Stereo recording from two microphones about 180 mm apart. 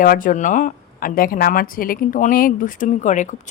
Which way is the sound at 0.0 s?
50° left (ahead or behind).